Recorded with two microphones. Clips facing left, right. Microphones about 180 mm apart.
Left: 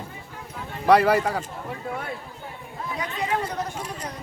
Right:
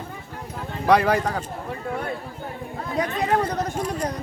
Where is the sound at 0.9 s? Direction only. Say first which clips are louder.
Left 1 dB; 5° left (ahead or behind).